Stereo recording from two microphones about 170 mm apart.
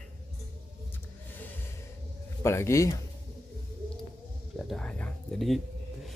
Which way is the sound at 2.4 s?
15° left (ahead or behind).